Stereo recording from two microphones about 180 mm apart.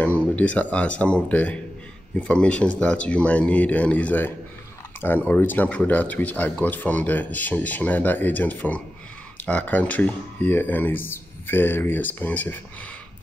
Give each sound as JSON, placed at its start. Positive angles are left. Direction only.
{"t": 0.4, "sound": "speech", "side_deg": 10}